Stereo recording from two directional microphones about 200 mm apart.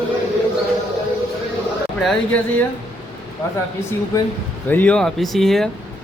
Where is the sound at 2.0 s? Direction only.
5° left (ahead or behind).